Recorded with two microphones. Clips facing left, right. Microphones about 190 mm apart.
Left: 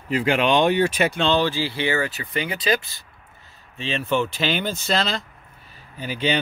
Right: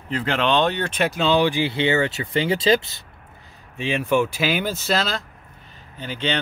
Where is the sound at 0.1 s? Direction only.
10° left (ahead or behind).